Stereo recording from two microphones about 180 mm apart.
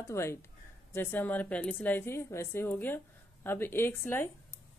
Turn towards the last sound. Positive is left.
turn(degrees=10)  # may be behind; listen again after turning